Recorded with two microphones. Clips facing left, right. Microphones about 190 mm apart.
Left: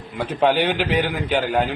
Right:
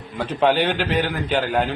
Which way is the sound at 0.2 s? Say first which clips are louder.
Even; 10° left (ahead or behind).